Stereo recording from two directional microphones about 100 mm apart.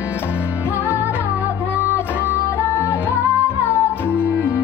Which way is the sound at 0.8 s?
25° left (ahead or behind).